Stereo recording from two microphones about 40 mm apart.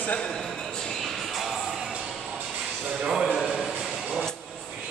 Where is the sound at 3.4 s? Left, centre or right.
Centre.